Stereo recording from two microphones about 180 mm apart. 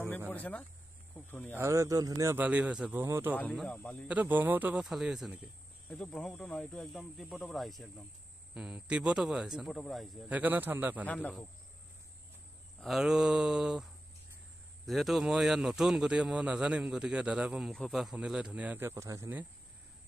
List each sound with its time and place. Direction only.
0.3 s speech: 10° left (ahead or behind)
1.6 s speech: 15° right (ahead or behind)
3.3 s speech: 5° left (ahead or behind)
4.1 s a man's voice: 10° right (ahead or behind)
11.1 s speech: 5° left (ahead or behind)
12.8 s a man's voice: centre (ahead or behind)
14.9 s a man's voice: centre (ahead or behind)